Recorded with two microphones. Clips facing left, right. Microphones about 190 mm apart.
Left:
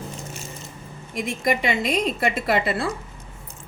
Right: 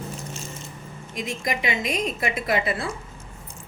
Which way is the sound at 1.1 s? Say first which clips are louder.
Left 5 dB; 60° left (ahead or behind).